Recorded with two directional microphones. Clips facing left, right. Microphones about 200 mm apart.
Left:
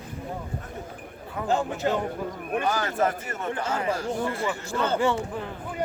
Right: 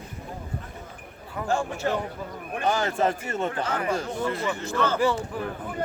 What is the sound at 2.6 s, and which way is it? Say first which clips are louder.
Speech: right 3 dB; 25° right (ahead or behind).